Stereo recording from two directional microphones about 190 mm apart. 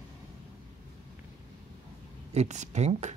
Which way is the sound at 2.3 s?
35° right (ahead or behind).